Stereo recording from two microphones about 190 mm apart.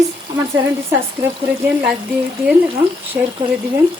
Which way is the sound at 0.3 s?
15° right (ahead or behind).